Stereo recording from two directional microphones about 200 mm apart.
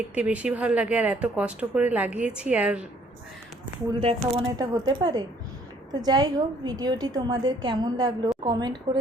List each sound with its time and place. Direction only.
0.1 s speech: 5° right (ahead or behind)
4.0 s a woman's voice: 25° right (ahead or behind)